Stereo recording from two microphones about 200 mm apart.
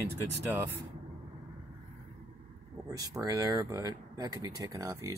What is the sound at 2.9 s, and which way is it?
Speech, 20° right (ahead or behind).